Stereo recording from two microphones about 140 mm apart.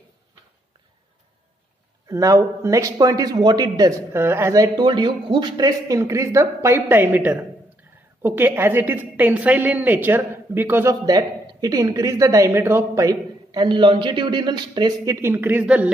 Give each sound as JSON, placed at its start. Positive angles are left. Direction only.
{"t": 2.0, "sound": "a man's voice", "side_deg": -25}